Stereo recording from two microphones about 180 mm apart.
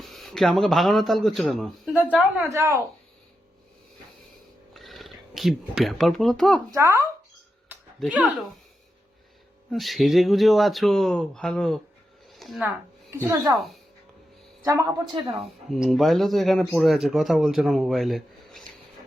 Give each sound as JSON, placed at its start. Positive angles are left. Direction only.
{"t": 0.0, "sound": "a man's voice", "side_deg": 0}
{"t": 2.4, "sound": "speech", "side_deg": -15}
{"t": 4.7, "sound": "a sound", "side_deg": 0}
{"t": 6.7, "sound": "speech", "side_deg": -15}
{"t": 7.9, "sound": "speech", "side_deg": 0}
{"t": 9.7, "sound": "speech", "side_deg": 0}
{"t": 12.3, "sound": "a sound", "side_deg": 0}
{"t": 13.2, "sound": "speech", "side_deg": -20}
{"t": 14.6, "sound": "speech", "side_deg": -15}
{"t": 15.4, "sound": "speech", "side_deg": 0}